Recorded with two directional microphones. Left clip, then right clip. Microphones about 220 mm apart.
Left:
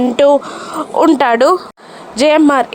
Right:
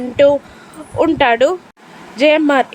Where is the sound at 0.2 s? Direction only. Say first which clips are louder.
Even; 25° left (ahead or behind).